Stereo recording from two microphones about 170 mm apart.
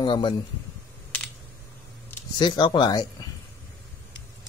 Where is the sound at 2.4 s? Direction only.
25° left (ahead or behind).